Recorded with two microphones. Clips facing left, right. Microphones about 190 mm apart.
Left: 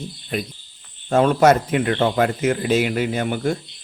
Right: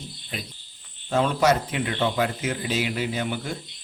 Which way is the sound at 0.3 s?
55° left (ahead or behind).